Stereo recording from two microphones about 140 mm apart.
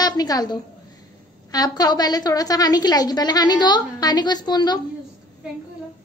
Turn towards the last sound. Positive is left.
turn(degrees=30)  # may be behind; listen again after turning